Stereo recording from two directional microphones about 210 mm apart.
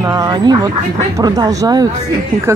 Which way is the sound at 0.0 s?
15° right (ahead or behind).